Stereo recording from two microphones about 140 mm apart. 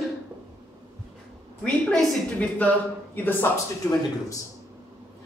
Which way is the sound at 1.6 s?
5° left (ahead or behind).